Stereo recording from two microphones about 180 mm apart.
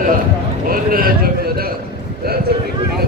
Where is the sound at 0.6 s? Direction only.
55° right (ahead or behind).